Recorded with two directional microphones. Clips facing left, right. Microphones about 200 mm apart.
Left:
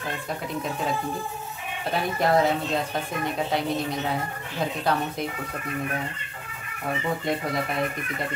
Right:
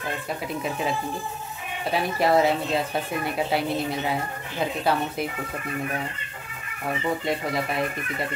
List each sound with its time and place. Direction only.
1.9 s speech: 5° right (ahead or behind)
7.2 s speech: centre (ahead or behind)